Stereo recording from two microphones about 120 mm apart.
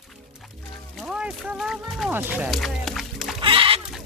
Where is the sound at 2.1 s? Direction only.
15° right (ahead or behind).